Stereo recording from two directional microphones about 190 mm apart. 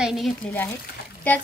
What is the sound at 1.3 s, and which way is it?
Speech, 10° left (ahead or behind).